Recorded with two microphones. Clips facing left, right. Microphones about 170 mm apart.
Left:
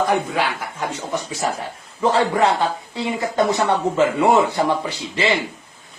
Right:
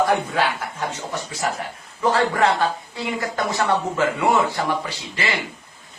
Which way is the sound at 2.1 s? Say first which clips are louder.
Left 1 dB; 20° left (ahead or behind).